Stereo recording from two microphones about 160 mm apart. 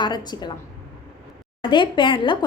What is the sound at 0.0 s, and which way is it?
Speech, 25° left (ahead or behind).